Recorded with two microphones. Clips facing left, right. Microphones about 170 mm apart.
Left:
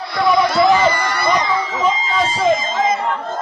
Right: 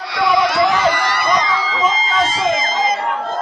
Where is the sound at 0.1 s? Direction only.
80° right.